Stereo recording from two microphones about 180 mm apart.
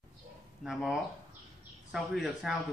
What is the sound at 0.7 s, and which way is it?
Speech, centre (ahead or behind).